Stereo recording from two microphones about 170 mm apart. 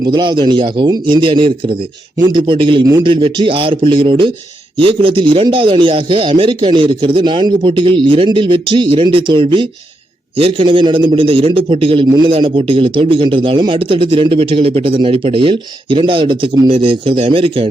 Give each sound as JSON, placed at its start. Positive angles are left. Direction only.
{"t": 0.0, "sound": "a man's voice", "side_deg": -25}